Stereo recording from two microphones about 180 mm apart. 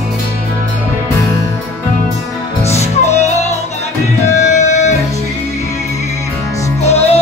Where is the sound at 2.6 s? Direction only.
35° left (ahead or behind).